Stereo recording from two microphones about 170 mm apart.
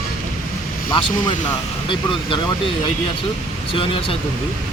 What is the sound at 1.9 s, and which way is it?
Speech, 30° left (ahead or behind).